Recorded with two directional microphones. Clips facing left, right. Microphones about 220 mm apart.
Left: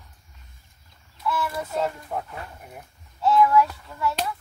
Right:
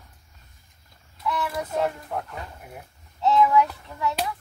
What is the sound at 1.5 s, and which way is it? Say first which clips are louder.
Speech: right 1 dB; 15° right (ahead or behind).